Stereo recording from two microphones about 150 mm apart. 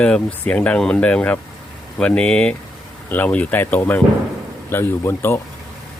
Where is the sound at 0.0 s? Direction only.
10° left (ahead or behind).